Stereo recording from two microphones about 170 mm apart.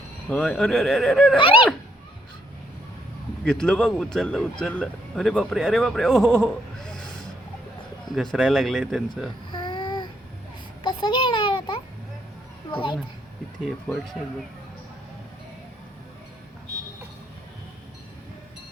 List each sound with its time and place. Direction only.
0.3 s speech: 5° left (ahead or behind)
3.4 s speech: 5° left (ahead or behind)
8.1 s speech: centre (ahead or behind)
9.5 s a sound: 30° left (ahead or behind)
13.7 s speech: centre (ahead or behind)